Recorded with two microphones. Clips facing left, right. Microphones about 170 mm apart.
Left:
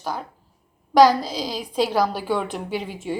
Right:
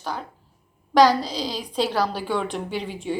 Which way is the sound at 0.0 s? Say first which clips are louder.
Left 2 dB; 10° left (ahead or behind).